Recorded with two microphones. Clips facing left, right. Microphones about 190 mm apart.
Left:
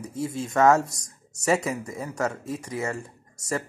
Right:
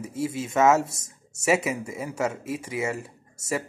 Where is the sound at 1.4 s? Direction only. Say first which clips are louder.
Right 1 dB; 5° right (ahead or behind).